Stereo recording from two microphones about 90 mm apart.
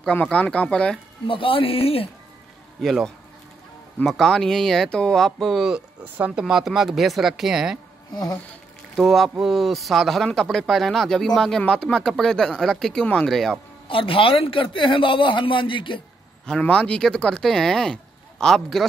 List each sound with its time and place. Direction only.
0.0 s speech: 15° left (ahead or behind)
1.2 s a man's voice: 75° left (ahead or behind)
2.8 s speech: centre (ahead or behind)
6.1 s speech: 15° right (ahead or behind)
6.4 s speech: 5° right (ahead or behind)
8.1 s a sound: 45° left (ahead or behind)
8.9 s speech: centre (ahead or behind)
13.8 s speech: 80° left
16.4 s speech: 10° left (ahead or behind)